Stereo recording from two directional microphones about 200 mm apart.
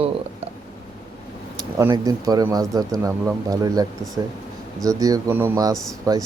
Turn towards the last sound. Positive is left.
turn(degrees=-15)  # may be behind; listen again after turning